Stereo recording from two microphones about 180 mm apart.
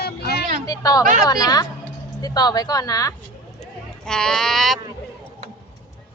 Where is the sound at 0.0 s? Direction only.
65° left (ahead or behind).